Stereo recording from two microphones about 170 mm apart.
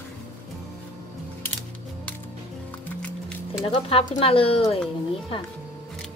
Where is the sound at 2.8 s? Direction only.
5° left (ahead or behind).